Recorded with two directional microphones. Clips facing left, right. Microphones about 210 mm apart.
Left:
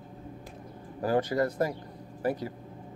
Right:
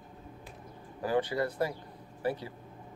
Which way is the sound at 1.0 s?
40° left (ahead or behind).